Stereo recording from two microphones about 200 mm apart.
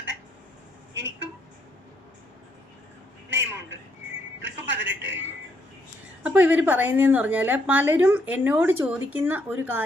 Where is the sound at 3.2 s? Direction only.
65° right (ahead or behind).